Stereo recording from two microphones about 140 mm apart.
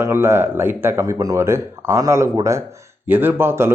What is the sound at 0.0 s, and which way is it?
Speech, 15° right (ahead or behind).